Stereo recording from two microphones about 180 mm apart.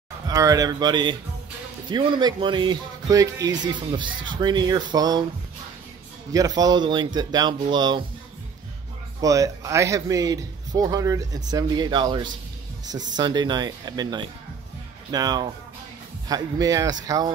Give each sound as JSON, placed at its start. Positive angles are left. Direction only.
{"t": 0.3, "sound": "speech", "side_deg": -20}
{"t": 6.3, "sound": "speech", "side_deg": -20}
{"t": 9.2, "sound": "speech", "side_deg": -20}